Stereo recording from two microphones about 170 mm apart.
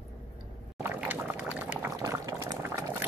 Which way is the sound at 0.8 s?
10° right (ahead or behind).